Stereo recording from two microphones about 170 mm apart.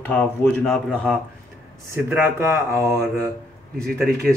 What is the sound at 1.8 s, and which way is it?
Speech, 15° right (ahead or behind).